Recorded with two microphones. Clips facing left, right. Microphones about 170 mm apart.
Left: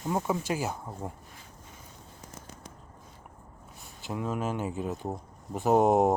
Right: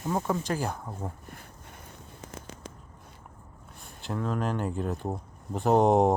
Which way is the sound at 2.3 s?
90° right.